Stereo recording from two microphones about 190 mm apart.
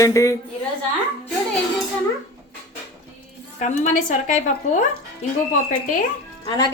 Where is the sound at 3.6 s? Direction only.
40° left (ahead or behind).